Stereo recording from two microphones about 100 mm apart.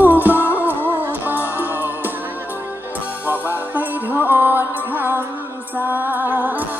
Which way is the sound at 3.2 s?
20° right (ahead or behind).